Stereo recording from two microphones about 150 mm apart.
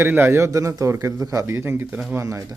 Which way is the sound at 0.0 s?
15° right (ahead or behind).